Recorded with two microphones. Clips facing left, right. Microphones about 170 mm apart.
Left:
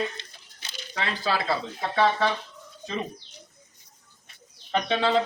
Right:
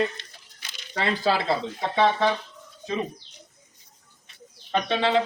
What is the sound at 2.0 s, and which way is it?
Speech, 15° right (ahead or behind).